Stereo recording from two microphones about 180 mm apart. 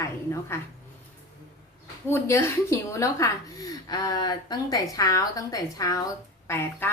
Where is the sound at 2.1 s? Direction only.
15° left (ahead or behind).